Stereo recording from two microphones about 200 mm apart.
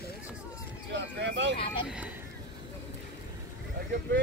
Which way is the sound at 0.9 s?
60° right (ahead or behind).